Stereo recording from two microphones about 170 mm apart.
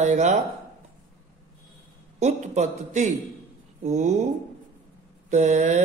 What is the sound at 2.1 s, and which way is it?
Speech, 40° right (ahead or behind).